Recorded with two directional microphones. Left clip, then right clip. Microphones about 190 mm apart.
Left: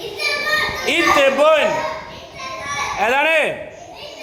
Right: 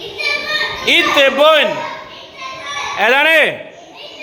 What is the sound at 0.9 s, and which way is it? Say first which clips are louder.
Speech: right 3 dB; 10° right (ahead or behind).